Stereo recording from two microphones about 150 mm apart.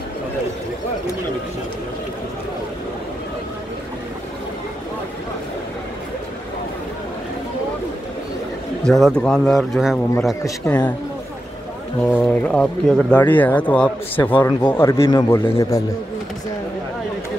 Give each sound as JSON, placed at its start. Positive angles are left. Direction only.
{"t": 8.8, "sound": "speech", "side_deg": 0}
{"t": 10.6, "sound": "speech", "side_deg": 15}
{"t": 12.0, "sound": "speech", "side_deg": 10}